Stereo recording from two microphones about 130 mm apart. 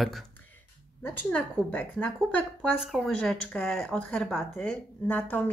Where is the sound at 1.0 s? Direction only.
15° left (ahead or behind).